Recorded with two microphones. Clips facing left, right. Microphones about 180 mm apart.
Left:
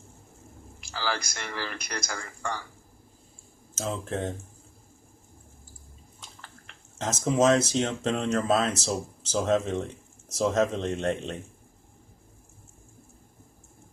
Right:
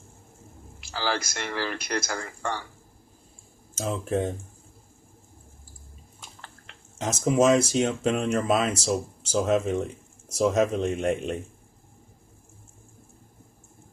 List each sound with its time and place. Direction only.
0.9 s speech: 45° right (ahead or behind)
3.8 s speech: 10° right (ahead or behind)
7.0 s speech: 10° right (ahead or behind)